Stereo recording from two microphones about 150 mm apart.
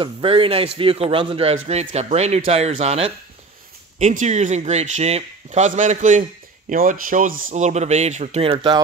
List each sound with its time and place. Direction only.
0.0 s a man's voice: 35° right (ahead or behind)
4.0 s speech: 55° right (ahead or behind)